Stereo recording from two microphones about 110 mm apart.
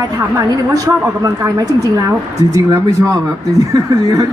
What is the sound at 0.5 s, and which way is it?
A woman's voice, 35° right (ahead or behind).